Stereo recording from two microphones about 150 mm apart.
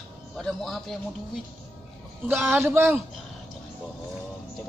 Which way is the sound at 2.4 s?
15° right (ahead or behind).